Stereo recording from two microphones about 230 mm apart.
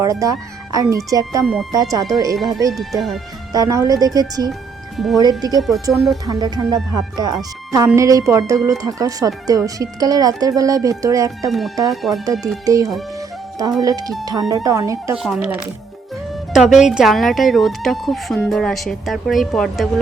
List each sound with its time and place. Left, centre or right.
0.0 s speech: centre
2.7 s speech: centre
3.5 s speech: centre
5.9 s speech: centre
6.2 s speech: centre
11.9 s speech: centre
12.2 s speech: centre
13.1 s music: centre
13.8 s speech: centre
15.1 s speech: centre